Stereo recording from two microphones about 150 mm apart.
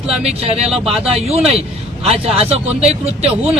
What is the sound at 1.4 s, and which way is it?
Speech, 5° right (ahead or behind).